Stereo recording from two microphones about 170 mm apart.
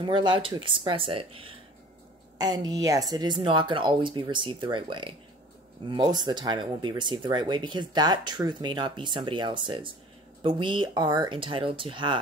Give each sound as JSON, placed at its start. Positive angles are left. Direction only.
{"t": 0.0, "sound": "speech", "side_deg": -30}